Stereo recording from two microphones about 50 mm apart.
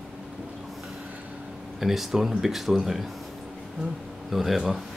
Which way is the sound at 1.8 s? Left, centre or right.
Centre.